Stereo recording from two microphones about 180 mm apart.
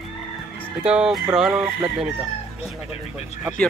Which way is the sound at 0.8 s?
5° right (ahead or behind).